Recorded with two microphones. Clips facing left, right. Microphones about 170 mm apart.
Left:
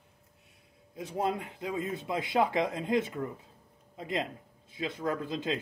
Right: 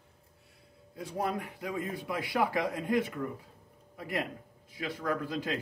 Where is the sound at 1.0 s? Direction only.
20° left (ahead or behind).